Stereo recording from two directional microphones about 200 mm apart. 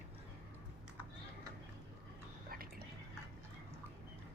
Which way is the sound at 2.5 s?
45° right (ahead or behind).